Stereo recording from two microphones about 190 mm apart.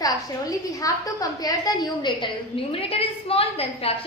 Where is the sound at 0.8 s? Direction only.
20° left (ahead or behind).